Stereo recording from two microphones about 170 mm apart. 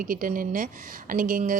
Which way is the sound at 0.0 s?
55° right (ahead or behind).